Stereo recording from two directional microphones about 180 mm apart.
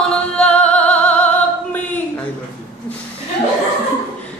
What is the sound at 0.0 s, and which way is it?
Music, 5° left (ahead or behind).